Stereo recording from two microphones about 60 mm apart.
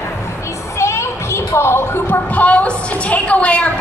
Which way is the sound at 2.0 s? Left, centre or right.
Left.